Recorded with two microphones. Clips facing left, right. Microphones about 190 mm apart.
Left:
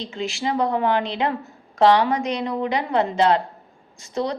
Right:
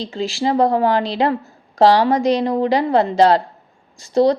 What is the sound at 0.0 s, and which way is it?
A woman's voice, 35° right (ahead or behind).